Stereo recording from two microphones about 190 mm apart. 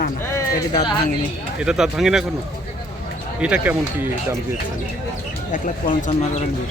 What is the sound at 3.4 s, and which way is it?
Speech, 5° right (ahead or behind).